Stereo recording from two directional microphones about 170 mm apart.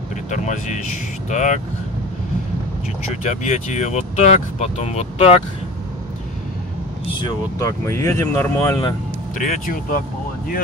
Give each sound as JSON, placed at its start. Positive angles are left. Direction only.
{"t": 0.3, "sound": "speech", "side_deg": 45}
{"t": 3.3, "sound": "speech", "side_deg": 45}
{"t": 7.2, "sound": "speech", "side_deg": 25}
{"t": 9.3, "sound": "speech", "side_deg": 55}